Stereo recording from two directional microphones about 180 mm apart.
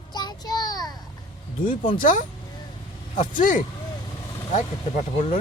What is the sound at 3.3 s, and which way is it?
Speech, 45° left (ahead or behind).